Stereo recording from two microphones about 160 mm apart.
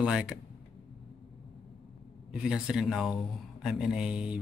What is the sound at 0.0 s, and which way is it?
Speech, 5° right (ahead or behind).